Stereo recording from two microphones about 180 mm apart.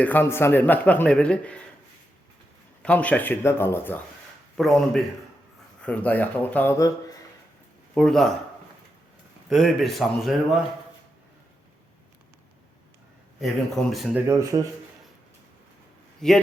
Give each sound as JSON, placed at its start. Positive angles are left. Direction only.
{"t": 0.0, "sound": "a man's voice", "side_deg": 10}
{"t": 2.8, "sound": "a man's voice", "side_deg": 10}
{"t": 7.9, "sound": "speech", "side_deg": 5}
{"t": 9.5, "sound": "speech", "side_deg": 0}
{"t": 13.9, "sound": "speech", "side_deg": 0}
{"t": 14.3, "sound": "speech", "side_deg": -15}
{"t": 16.2, "sound": "speech", "side_deg": 5}